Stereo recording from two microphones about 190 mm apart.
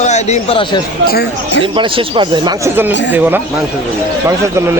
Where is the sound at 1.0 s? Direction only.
60° left (ahead or behind).